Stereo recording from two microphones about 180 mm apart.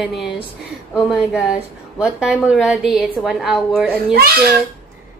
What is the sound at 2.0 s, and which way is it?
Speech, 5° right (ahead or behind).